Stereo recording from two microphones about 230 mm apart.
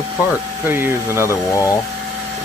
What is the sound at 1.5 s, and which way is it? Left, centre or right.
Speech, centre.